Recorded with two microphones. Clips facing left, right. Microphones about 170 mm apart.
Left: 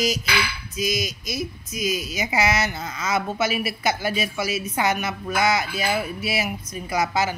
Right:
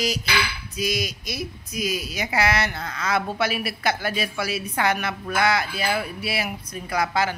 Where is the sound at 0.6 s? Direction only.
60° right (ahead or behind).